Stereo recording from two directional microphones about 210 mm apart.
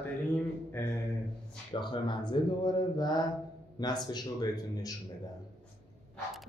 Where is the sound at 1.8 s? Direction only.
20° left (ahead or behind).